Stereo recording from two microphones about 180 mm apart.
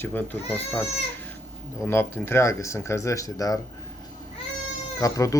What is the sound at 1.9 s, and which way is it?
Speech, 10° left (ahead or behind).